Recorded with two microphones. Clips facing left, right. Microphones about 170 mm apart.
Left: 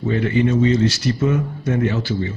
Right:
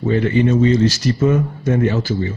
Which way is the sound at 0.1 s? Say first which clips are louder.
Right 2 dB; 35° right (ahead or behind).